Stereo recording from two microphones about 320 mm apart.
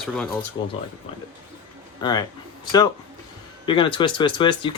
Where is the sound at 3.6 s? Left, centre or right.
Centre.